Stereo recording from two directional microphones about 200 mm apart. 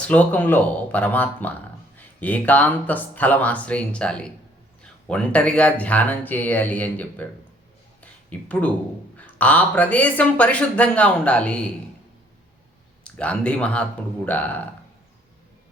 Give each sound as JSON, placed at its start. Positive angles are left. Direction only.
{"t": 0.0, "sound": "speech", "side_deg": 5}
{"t": 8.0, "sound": "a sound", "side_deg": 5}
{"t": 9.1, "sound": "speech", "side_deg": 5}
{"t": 13.1, "sound": "speech", "side_deg": 5}